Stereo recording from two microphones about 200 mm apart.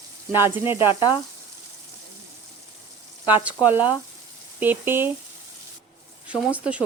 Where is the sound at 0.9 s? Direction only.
25° left (ahead or behind).